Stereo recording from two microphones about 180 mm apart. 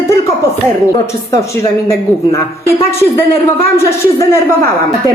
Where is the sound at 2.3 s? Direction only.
15° left (ahead or behind).